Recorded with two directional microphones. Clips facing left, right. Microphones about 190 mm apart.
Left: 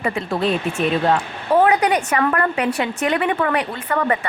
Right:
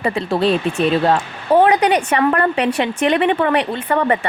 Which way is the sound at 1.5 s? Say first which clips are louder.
Right 3 dB; 30° right (ahead or behind).